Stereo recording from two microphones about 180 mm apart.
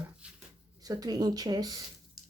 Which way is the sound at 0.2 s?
5° right (ahead or behind).